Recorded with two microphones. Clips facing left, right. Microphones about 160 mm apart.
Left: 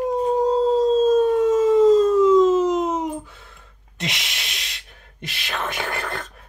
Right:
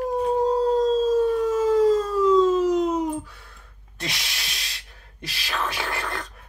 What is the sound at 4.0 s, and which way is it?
Speech, 20° left (ahead or behind).